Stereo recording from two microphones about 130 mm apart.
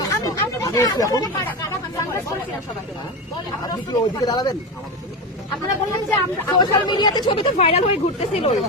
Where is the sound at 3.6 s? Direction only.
30° left (ahead or behind).